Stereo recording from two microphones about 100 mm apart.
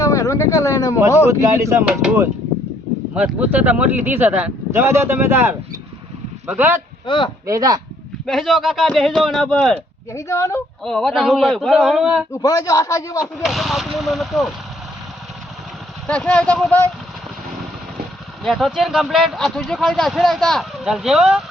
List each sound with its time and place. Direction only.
0.0 s a sound: 35° left (ahead or behind)
0.9 s speech: 30° right (ahead or behind)
3.2 s speech: 15° right (ahead or behind)
4.7 s speech: 25° right (ahead or behind)
6.6 s speech: 20° right (ahead or behind)
7.1 s speech: 50° left (ahead or behind)
7.4 s speech: 35° right (ahead or behind)
8.3 s speech: centre (ahead or behind)
10.1 s speech: 30° left (ahead or behind)
10.8 s speech: centre (ahead or behind)
12.3 s a man's voice: 40° left (ahead or behind)
13.4 s speech: centre (ahead or behind)
16.0 s speech: 10° left (ahead or behind)
18.4 s speech: centre (ahead or behind)